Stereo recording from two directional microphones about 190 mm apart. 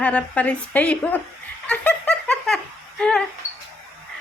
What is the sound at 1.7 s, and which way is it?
Snicker, 10° left (ahead or behind).